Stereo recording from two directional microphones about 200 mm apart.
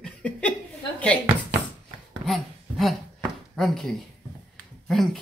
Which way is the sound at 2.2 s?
Centre (ahead or behind).